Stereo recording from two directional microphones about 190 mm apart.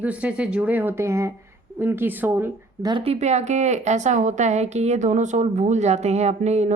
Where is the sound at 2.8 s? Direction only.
30° right (ahead or behind).